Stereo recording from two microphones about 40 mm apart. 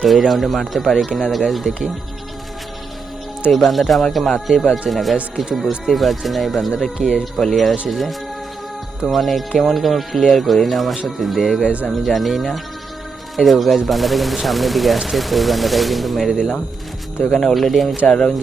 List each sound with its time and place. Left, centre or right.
0.0 s speech: centre
3.7 s speech: centre
7.0 s speech: centre
7.3 s speech: centre
18.0 s speech: centre